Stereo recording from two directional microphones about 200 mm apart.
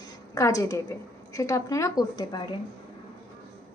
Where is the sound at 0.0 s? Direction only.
15° left (ahead or behind).